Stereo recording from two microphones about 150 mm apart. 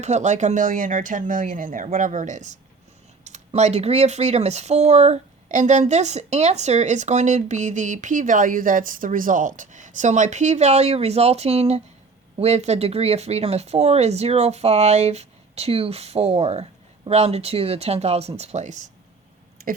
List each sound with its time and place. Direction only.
0.0 s speech: 50° right (ahead or behind)